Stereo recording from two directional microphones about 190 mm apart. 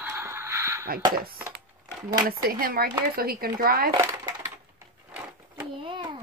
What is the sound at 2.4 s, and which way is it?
Speech, 50° right (ahead or behind).